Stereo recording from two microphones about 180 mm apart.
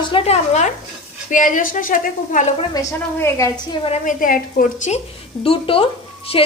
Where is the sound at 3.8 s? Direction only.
40° left (ahead or behind).